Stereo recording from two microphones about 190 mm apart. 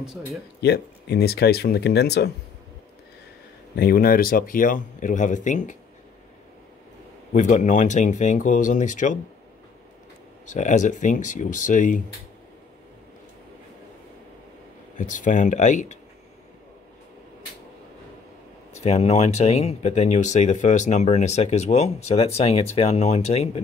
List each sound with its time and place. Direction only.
0.0 s speech: 5° right (ahead or behind)
0.6 s speech: 60° left (ahead or behind)
3.7 s speech: 50° left (ahead or behind)
7.3 s speech: 40° left (ahead or behind)
10.5 s speech: 40° left (ahead or behind)
15.0 s speech: 40° left (ahead or behind)
18.8 s speech: 35° left (ahead or behind)